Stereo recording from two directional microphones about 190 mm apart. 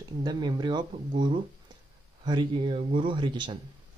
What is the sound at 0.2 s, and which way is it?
Speech, 25° right (ahead or behind).